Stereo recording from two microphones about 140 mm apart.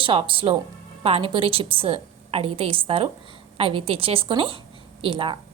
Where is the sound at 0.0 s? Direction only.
40° right (ahead or behind).